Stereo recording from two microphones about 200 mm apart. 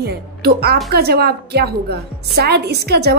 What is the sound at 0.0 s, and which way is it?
A woman's voice, 55° right (ahead or behind).